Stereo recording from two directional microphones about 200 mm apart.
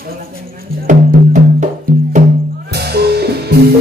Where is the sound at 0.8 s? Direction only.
40° right (ahead or behind).